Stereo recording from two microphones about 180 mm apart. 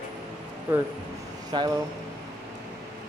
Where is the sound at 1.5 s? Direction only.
25° right (ahead or behind).